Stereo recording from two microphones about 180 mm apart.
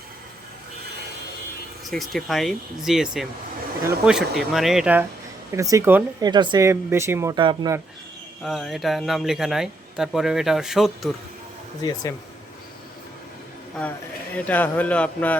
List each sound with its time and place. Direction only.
1.9 s speech: centre (ahead or behind)
5.5 s speech: 15° right (ahead or behind)
7.3 s speech: 25° right (ahead or behind)
8.4 s speech: centre (ahead or behind)
11.8 s speech: 25° left (ahead or behind)
14.3 s speech: 10° left (ahead or behind)